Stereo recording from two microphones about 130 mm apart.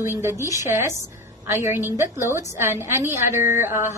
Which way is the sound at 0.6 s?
20° right (ahead or behind).